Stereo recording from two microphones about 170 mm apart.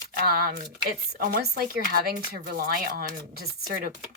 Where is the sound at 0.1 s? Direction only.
60° right (ahead or behind).